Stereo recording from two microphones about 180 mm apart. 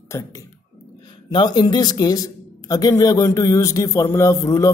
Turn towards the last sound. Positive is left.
turn(degrees=20)  # may be behind; listen again after turning